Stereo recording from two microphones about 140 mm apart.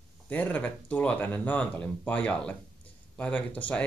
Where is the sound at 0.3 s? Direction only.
10° left (ahead or behind).